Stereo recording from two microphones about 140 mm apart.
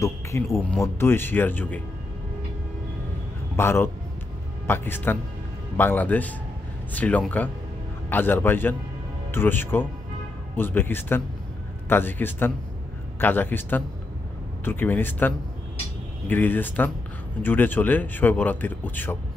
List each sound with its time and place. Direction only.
0.0 s speech: 20° left (ahead or behind)
3.5 s speech: 20° left (ahead or behind)